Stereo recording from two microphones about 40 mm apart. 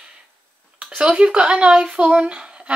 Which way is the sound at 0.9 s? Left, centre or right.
Right.